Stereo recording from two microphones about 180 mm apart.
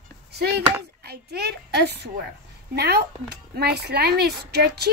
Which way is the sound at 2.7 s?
65° right (ahead or behind).